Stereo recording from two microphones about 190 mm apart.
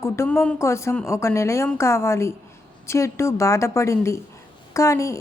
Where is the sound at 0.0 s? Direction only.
15° left (ahead or behind).